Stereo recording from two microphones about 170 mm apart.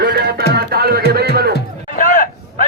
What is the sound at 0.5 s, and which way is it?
Music, 65° right (ahead or behind).